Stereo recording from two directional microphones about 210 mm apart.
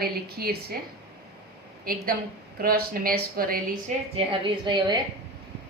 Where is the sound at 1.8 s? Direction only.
45° right (ahead or behind).